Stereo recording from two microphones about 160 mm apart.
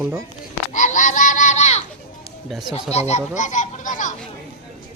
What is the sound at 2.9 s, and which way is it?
A child's voice, 45° left (ahead or behind).